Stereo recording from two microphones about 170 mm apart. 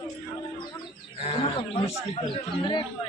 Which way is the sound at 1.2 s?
35° left (ahead or behind).